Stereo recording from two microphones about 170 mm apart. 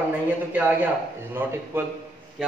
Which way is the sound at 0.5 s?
10° right (ahead or behind).